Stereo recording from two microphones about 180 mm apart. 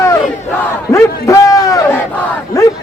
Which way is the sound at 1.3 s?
20° left (ahead or behind).